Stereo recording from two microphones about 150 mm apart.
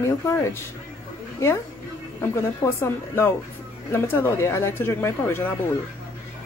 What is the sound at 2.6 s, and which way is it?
Speech, 20° left (ahead or behind).